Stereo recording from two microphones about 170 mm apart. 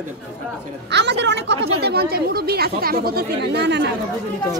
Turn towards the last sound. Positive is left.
turn(degrees=-85)